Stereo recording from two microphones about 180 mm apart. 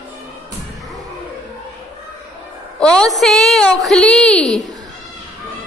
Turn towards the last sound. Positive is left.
turn(degrees=5)  # may be behind; listen again after turning